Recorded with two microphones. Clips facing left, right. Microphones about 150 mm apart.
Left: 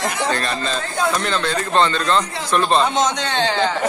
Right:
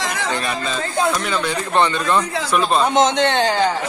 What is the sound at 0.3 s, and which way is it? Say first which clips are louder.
Speech: left 1 dB; 10° right (ahead or behind).